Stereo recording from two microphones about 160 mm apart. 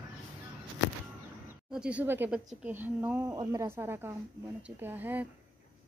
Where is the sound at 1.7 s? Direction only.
5° right (ahead or behind).